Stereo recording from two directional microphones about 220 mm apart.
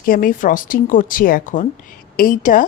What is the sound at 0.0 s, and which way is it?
Speech, 40° left (ahead or behind).